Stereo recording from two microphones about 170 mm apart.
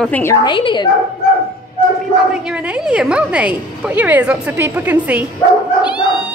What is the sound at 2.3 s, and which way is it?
A woman's voice, 5° right (ahead or behind).